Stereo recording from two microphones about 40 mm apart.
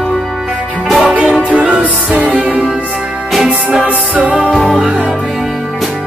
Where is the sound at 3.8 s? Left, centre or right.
Right.